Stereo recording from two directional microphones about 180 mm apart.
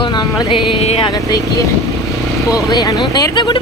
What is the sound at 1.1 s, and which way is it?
Speech, 20° left (ahead or behind).